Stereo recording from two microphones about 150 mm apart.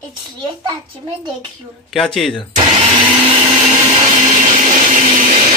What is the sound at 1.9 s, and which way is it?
Speech, centre (ahead or behind).